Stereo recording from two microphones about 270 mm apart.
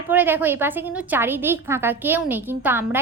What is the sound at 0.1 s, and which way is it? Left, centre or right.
A woman's voice, centre.